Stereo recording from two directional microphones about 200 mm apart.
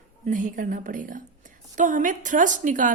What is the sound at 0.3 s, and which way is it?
A woman's voice, 40° right (ahead or behind).